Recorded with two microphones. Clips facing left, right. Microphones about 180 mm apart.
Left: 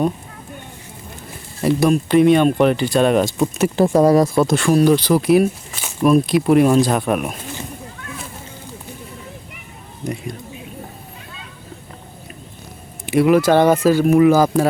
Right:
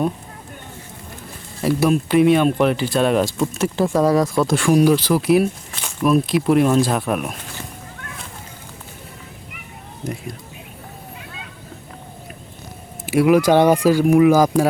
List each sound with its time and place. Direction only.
1.6 s speech: 5° right (ahead or behind)
3.2 s speech: 20° left (ahead or behind)
4.5 s speech: 10° right (ahead or behind)
10.0 s speech: centre (ahead or behind)
13.1 s speech: 5° right (ahead or behind)